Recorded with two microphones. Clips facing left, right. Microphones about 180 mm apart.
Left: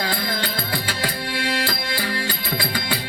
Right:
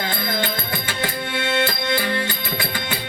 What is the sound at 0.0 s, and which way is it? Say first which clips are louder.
Music: right 1 dB; 20° right (ahead or behind).